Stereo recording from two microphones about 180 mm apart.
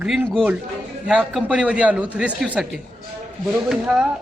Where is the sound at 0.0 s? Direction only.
5° right (ahead or behind).